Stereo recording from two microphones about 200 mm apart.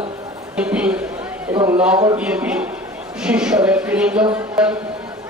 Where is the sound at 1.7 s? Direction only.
5° right (ahead or behind).